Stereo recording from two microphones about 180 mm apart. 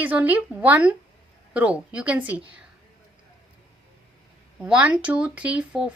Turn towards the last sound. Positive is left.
turn(degrees=-5)  # may be behind; listen again after turning